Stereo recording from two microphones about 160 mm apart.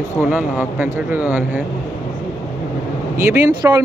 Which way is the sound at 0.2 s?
10° right (ahead or behind).